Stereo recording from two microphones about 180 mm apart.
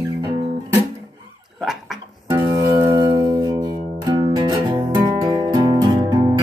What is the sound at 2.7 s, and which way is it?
Music, 25° right (ahead or behind).